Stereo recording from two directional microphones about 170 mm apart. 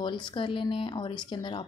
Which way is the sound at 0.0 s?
30° left (ahead or behind).